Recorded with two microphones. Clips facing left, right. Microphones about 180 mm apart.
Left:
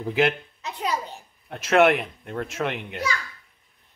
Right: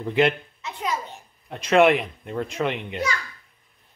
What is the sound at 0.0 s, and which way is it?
Speech, 5° left (ahead or behind).